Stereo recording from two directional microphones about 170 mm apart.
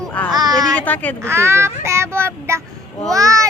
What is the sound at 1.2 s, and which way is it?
A child's voice, 15° right (ahead or behind).